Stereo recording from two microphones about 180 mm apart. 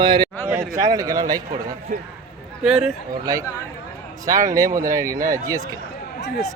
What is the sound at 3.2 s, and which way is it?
Speech, 20° right (ahead or behind).